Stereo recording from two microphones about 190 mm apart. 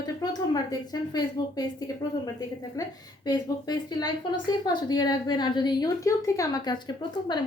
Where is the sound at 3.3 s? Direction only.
20° left (ahead or behind).